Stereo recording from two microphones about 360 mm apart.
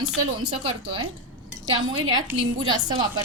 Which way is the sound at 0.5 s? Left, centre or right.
Centre.